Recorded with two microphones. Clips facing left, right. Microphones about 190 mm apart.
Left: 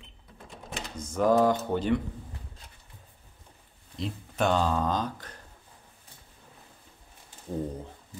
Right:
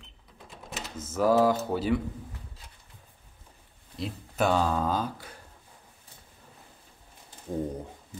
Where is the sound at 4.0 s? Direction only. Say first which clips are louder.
Right 1 dB; 5° right (ahead or behind).